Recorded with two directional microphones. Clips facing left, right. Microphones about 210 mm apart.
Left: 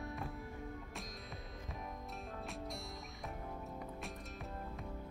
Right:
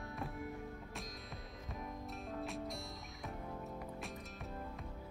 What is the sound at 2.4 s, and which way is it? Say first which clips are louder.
Music: right 4 dB; centre (ahead or behind).